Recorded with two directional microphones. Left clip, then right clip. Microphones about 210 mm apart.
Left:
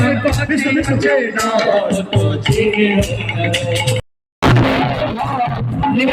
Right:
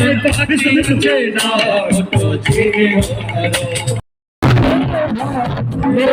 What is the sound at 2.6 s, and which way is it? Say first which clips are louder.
Music: right 1 dB; 25° right (ahead or behind).